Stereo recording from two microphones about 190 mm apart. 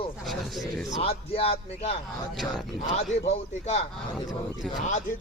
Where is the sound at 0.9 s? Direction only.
30° left (ahead or behind).